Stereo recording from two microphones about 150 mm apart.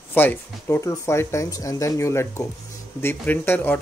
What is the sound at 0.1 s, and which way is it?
Speech, 10° left (ahead or behind).